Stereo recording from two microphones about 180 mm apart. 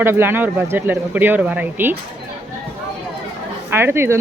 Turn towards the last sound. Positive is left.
turn(degrees=-15)  # may be behind; listen again after turning